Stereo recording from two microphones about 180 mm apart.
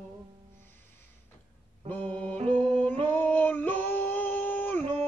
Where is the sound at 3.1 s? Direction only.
10° left (ahead or behind).